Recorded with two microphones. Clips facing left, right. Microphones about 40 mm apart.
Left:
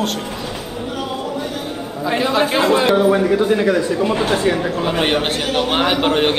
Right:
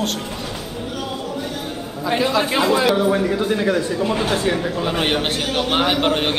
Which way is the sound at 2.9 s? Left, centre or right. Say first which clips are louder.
Left 4 dB; centre.